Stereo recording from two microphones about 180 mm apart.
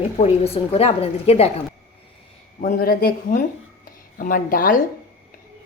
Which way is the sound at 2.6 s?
50° left (ahead or behind).